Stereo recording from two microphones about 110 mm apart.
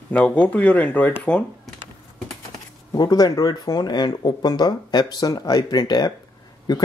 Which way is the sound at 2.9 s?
35° left (ahead or behind).